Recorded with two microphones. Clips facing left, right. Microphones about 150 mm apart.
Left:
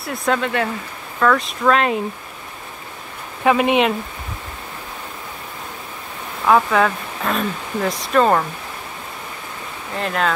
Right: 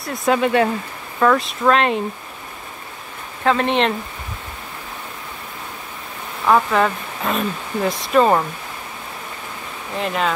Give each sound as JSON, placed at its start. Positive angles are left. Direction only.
{"t": 0.0, "sound": "speech", "side_deg": 0}
{"t": 0.4, "sound": "speech", "side_deg": -20}
{"t": 1.4, "sound": "speech", "side_deg": 0}
{"t": 3.4, "sound": "speech", "side_deg": 10}
{"t": 6.4, "sound": "speech", "side_deg": 0}
{"t": 9.9, "sound": "speech", "side_deg": 0}